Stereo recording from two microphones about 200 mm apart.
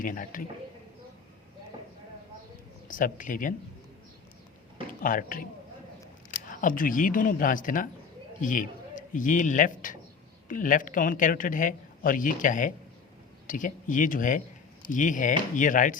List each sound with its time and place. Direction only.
0.0 s speech: 40° left (ahead or behind)
2.8 s speech: 40° left (ahead or behind)
5.0 s speech: 45° left (ahead or behind)
6.6 s speech: 45° left (ahead or behind)